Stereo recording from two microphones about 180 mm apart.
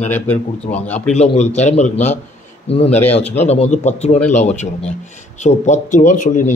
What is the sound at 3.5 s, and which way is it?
A man's voice, 40° left (ahead or behind).